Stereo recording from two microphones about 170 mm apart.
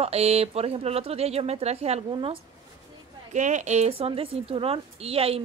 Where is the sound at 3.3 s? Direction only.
45° right (ahead or behind).